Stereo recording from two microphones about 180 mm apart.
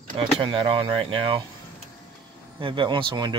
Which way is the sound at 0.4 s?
30° right (ahead or behind).